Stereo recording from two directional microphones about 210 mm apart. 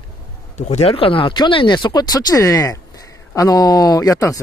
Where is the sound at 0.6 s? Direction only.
30° left (ahead or behind).